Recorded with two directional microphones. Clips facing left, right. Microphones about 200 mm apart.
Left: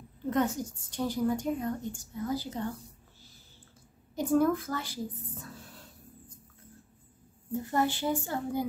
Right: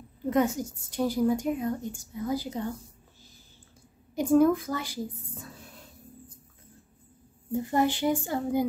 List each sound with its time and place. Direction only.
0.3 s a woman's voice: 10° right (ahead or behind)
4.1 s a woman's voice: 15° right (ahead or behind)
7.6 s a woman's voice: 15° right (ahead or behind)